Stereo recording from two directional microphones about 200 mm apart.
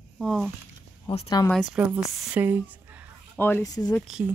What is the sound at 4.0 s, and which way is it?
Speech, centre (ahead or behind).